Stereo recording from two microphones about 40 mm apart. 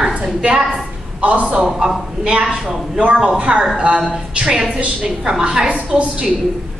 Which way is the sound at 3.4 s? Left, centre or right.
Right.